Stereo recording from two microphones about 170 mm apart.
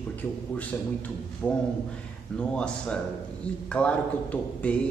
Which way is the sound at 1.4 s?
5° left (ahead or behind).